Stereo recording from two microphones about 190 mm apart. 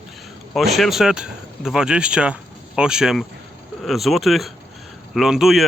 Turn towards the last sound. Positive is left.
turn(degrees=0)  # may be behind; listen again after turning